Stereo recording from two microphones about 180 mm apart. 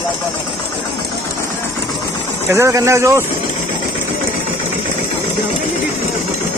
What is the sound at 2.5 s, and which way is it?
Speech, 15° right (ahead or behind).